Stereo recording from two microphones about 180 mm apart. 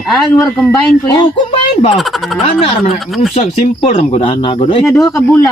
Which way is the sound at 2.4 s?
35° left (ahead or behind).